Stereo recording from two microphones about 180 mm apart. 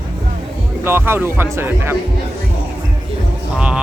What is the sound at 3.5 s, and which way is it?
Speech, 5° right (ahead or behind).